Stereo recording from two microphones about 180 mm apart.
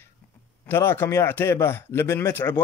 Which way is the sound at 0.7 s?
15° left (ahead or behind).